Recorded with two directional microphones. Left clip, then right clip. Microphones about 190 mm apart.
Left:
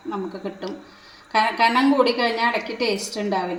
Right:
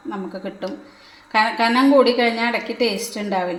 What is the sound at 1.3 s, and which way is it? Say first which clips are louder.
A woman's voice: right 1 dB; 15° right (ahead or behind).